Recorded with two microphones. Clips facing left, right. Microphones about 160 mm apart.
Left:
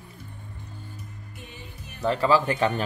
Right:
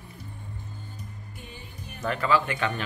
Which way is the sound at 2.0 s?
35° left (ahead or behind).